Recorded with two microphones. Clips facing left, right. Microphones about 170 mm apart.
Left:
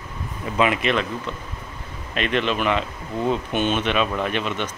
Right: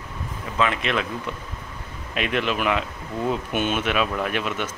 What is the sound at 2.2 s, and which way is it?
Speech, 5° right (ahead or behind).